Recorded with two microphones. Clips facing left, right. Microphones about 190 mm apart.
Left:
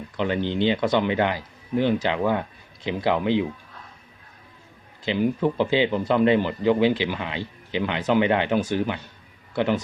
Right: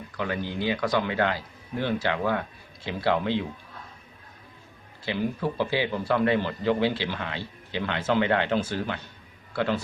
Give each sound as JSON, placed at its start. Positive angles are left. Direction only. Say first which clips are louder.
{"t": 0.2, "sound": "speech", "louder": "left 6 dB", "side_deg": 25}
{"t": 5.0, "sound": "speech", "louder": "left 6 dB", "side_deg": 20}